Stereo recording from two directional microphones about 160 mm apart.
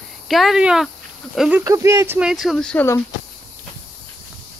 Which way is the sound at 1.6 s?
20° right (ahead or behind).